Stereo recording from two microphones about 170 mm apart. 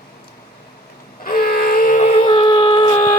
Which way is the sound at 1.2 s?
60° left (ahead or behind).